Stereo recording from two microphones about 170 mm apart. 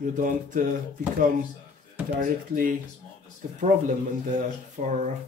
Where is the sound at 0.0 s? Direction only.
50° right (ahead or behind).